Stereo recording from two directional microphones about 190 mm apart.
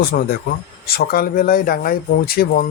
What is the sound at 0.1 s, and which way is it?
Speech, 50° left (ahead or behind).